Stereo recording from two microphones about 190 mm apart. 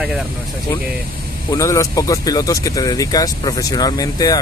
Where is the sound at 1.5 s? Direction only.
15° left (ahead or behind).